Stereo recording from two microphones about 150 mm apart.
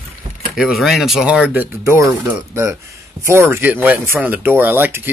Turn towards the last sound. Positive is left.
turn(degrees=-15)  # may be behind; listen again after turning